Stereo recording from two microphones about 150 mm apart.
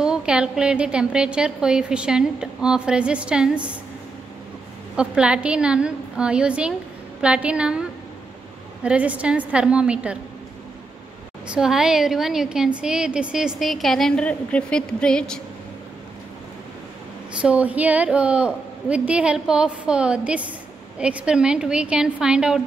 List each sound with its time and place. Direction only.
0.0 s a woman's voice: 5° right (ahead or behind)
4.9 s a woman's voice: 5° right (ahead or behind)
8.8 s a woman's voice: 10° right (ahead or behind)
11.4 s a woman's voice: 5° right (ahead or behind)
17.4 s a woman's voice: 10° right (ahead or behind)